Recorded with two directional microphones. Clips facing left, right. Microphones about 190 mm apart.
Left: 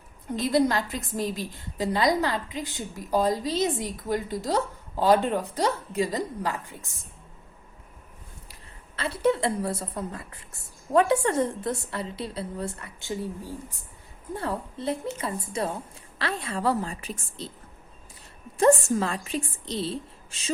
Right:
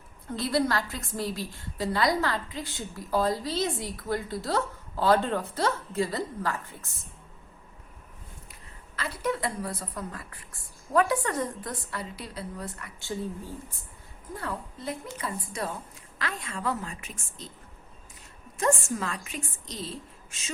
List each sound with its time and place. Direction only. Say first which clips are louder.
0.3 s a woman's voice: left 4 dB; 20° left (ahead or behind)
9.0 s a woman's voice: left 6 dB; 25° left (ahead or behind)
14.3 s a woman's voice: left 5 dB; 25° left (ahead or behind)
18.5 s a woman's voice: left 7 dB; 30° left (ahead or behind)